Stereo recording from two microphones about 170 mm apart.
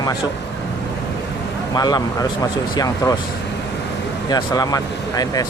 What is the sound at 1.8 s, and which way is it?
Speech, 25° left (ahead or behind).